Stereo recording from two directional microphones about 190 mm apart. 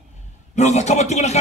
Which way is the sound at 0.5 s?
35° left (ahead or behind).